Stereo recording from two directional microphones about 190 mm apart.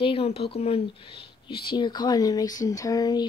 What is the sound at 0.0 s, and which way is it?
Speech, 30° left (ahead or behind).